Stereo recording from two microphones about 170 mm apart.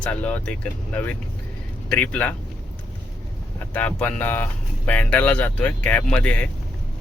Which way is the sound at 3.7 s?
10° left (ahead or behind).